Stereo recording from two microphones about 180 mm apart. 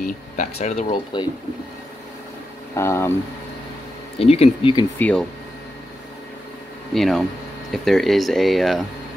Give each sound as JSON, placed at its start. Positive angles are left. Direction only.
{"t": 0.0, "sound": "speech", "side_deg": 40}
{"t": 0.9, "sound": "speech", "side_deg": 25}
{"t": 2.7, "sound": "speech", "side_deg": 15}
{"t": 4.2, "sound": "speech", "side_deg": 35}
{"t": 4.9, "sound": "speech", "side_deg": 10}
{"t": 6.9, "sound": "speech", "side_deg": 0}